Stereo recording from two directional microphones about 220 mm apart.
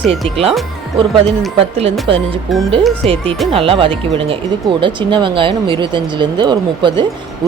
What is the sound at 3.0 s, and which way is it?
Speech, 25° right (ahead or behind).